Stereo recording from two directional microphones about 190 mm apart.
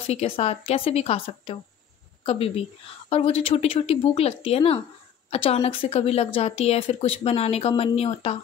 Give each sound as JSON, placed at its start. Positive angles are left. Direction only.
{"t": 0.0, "sound": "a woman's voice", "side_deg": 35}